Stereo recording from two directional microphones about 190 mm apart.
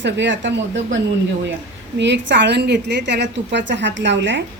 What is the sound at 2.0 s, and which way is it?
A woman's voice, 70° right (ahead or behind).